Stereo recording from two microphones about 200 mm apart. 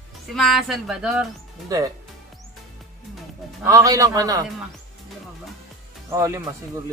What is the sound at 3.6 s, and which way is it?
Speech, 15° right (ahead or behind).